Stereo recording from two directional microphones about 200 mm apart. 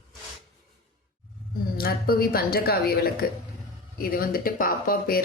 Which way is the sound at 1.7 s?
50° left (ahead or behind).